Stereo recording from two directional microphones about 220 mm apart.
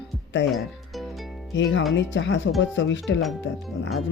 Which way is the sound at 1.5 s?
55° left (ahead or behind).